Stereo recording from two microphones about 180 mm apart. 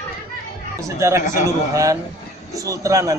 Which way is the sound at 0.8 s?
15° right (ahead or behind).